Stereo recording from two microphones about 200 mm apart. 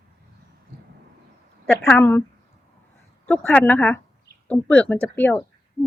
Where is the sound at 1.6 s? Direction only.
10° left (ahead or behind).